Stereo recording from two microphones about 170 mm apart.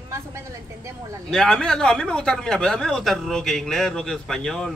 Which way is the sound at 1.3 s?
5° left (ahead or behind).